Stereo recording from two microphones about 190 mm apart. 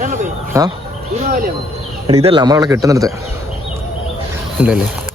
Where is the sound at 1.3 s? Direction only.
50° right (ahead or behind).